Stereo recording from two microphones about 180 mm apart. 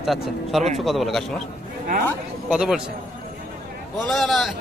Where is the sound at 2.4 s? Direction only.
5° right (ahead or behind).